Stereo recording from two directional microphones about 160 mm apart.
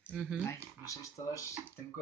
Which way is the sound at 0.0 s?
5° left (ahead or behind).